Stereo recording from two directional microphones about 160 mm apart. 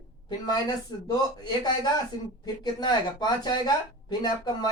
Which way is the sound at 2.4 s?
25° left (ahead or behind).